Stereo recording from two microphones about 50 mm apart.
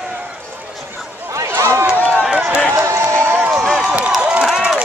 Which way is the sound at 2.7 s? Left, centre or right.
Right.